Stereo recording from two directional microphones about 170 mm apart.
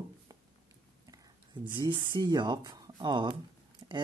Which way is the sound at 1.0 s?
25° right (ahead or behind).